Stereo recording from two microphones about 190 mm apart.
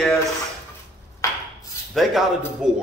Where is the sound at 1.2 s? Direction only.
15° left (ahead or behind).